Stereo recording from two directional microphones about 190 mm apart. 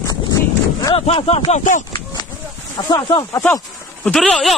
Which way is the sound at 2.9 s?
20° left (ahead or behind).